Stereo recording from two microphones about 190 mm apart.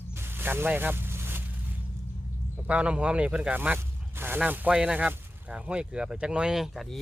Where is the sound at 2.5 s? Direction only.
5° right (ahead or behind).